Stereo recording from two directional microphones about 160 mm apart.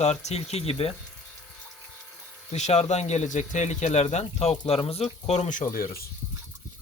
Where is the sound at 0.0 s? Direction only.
45° left (ahead or behind).